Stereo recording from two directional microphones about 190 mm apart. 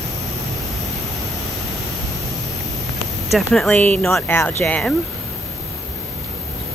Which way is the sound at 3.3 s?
Centre (ahead or behind).